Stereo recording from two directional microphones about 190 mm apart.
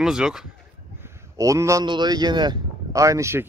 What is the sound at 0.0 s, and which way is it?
Speech, 5° right (ahead or behind).